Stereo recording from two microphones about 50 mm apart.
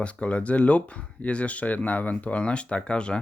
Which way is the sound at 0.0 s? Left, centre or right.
Left.